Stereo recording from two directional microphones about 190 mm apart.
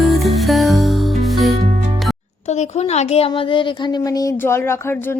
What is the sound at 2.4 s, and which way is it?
A woman's voice, 35° left (ahead or behind).